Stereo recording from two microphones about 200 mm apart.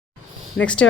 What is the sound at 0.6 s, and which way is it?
Speech, 65° left (ahead or behind).